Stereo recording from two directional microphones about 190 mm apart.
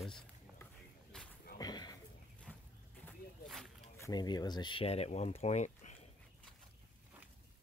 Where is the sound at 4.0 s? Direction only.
20° left (ahead or behind); by 5.9 s 40° left (ahead or behind).